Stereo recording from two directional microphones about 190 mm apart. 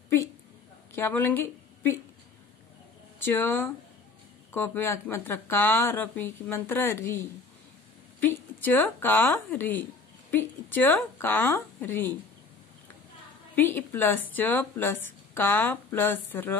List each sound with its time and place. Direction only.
0.9 s a woman's voice: 10° left (ahead or behind)
3.3 s a woman's voice: 10° left (ahead or behind)
8.2 s a woman's voice: 10° left (ahead or behind)
13.6 s a woman's voice: 10° left (ahead or behind)